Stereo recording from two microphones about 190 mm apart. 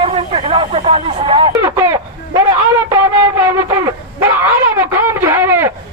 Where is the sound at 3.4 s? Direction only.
15° right (ahead or behind).